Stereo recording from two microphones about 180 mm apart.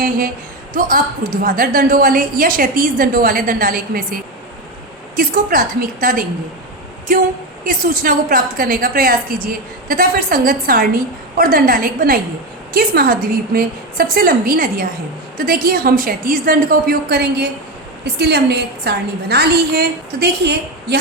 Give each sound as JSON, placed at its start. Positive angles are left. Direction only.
{"t": 0.7, "sound": "a woman's voice", "side_deg": -50}
{"t": 7.6, "sound": "a woman's voice", "side_deg": -50}